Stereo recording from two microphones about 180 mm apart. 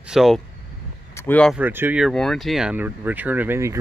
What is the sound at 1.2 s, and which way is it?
Speech, 10° left (ahead or behind).